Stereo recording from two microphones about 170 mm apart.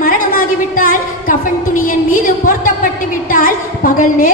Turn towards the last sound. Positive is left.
turn(degrees=55)  # may be behind; listen again after turning